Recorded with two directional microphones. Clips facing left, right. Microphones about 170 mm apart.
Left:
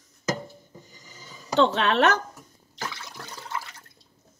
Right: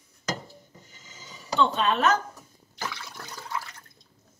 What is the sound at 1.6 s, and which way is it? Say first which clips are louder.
Speech: left 2 dB; 85° left.